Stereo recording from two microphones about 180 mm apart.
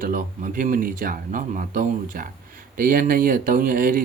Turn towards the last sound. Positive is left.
turn(degrees=-50)  # may be behind; listen again after turning